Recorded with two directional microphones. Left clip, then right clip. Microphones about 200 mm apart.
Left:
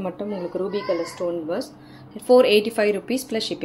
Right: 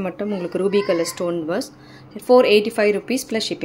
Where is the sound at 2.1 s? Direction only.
15° right (ahead or behind).